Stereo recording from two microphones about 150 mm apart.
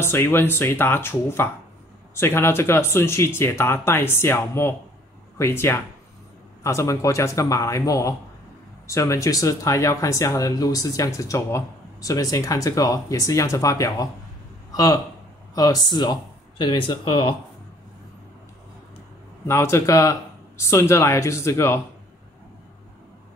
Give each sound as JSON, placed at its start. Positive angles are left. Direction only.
{"t": 0.0, "sound": "speech", "side_deg": 15}
{"t": 19.4, "sound": "speech", "side_deg": 15}